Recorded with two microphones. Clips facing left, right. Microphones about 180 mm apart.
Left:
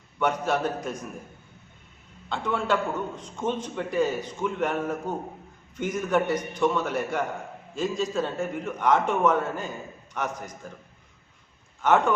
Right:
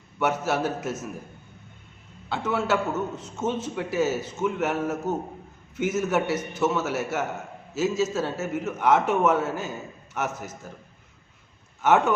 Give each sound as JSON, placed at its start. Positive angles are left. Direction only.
{"t": 0.2, "sound": "a man's voice", "side_deg": -5}
{"t": 2.3, "sound": "a man's voice", "side_deg": -5}
{"t": 11.8, "sound": "a man's voice", "side_deg": -5}